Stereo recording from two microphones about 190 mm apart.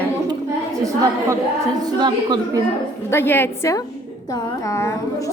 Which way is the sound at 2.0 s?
20° right (ahead or behind).